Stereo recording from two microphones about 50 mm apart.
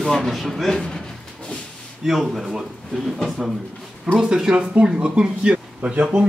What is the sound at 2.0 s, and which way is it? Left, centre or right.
Speech, centre.